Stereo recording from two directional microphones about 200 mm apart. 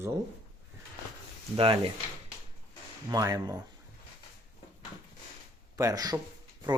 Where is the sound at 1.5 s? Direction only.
25° right (ahead or behind).